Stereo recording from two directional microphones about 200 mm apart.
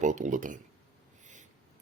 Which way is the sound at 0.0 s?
40° right (ahead or behind).